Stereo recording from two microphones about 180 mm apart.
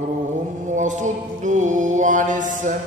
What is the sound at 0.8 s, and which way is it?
Mantra, 45° right (ahead or behind).